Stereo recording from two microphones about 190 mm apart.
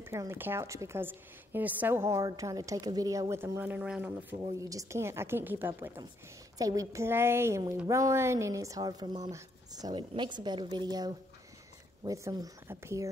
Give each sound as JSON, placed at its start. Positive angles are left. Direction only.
{"t": 0.0, "sound": "a woman's voice", "side_deg": -15}